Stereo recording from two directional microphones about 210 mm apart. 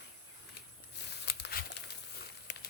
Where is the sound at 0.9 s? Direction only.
50° left (ahead or behind).